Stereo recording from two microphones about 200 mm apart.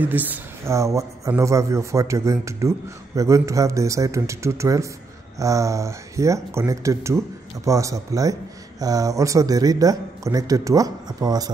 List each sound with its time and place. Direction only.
0.0 s speech: 10° right (ahead or behind)